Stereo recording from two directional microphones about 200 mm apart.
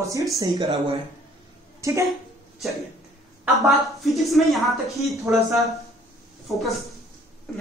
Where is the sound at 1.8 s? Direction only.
15° right (ahead or behind).